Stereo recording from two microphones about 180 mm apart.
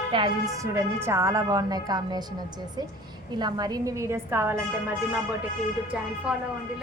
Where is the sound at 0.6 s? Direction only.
15° right (ahead or behind).